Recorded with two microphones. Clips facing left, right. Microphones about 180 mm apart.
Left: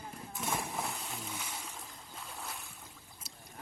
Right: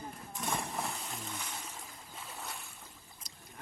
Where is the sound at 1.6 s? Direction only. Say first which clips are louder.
Even; centre (ahead or behind).